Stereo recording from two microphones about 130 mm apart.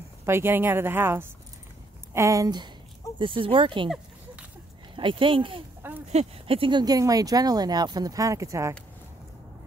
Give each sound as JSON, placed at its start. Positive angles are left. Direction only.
{"t": 0.2, "sound": "a woman's voice", "side_deg": -20}
{"t": 4.9, "sound": "speech", "side_deg": -40}
{"t": 5.8, "sound": "a sound", "side_deg": -15}
{"t": 6.0, "sound": "speech", "side_deg": -50}